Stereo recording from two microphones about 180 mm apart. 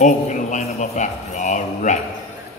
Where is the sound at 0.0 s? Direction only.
45° left (ahead or behind).